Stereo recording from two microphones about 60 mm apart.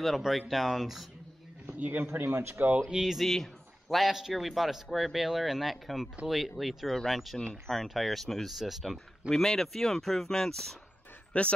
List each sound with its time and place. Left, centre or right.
0.0 s speech: centre
1.7 s a man's voice: right
2.0 s a man's voice: right
2.5 s speech: right
2.9 s speech: centre
7.3 s speech: centre
7.7 s speech: centre
9.3 s speech: centre
11.3 s speech: left